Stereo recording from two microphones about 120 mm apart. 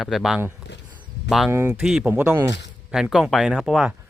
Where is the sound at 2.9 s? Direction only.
5° right (ahead or behind).